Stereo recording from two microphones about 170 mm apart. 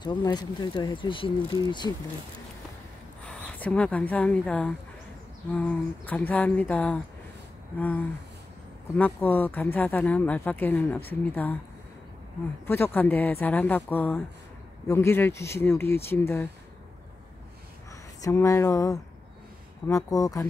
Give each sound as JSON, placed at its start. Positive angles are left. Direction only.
{"t": 0.0, "sound": "speech", "side_deg": 25}
{"t": 3.3, "sound": "speech", "side_deg": 10}
{"t": 8.9, "sound": "speech", "side_deg": 10}
{"t": 12.6, "sound": "speech", "side_deg": 10}
{"t": 18.2, "sound": "speech", "side_deg": 15}